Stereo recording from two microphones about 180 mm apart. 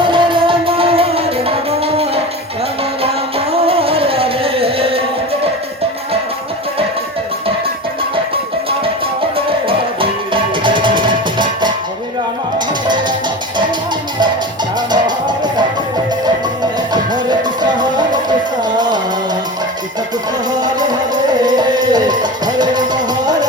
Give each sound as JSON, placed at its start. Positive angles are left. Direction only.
{"t": 0.0, "sound": "music", "side_deg": -25}
{"t": 9.5, "sound": "music", "side_deg": -30}
{"t": 14.8, "sound": "music", "side_deg": -25}
{"t": 16.9, "sound": "music", "side_deg": -25}
{"t": 20.5, "sound": "music", "side_deg": -25}